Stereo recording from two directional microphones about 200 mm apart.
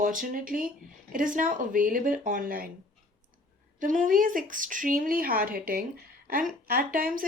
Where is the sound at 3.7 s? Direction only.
40° right (ahead or behind).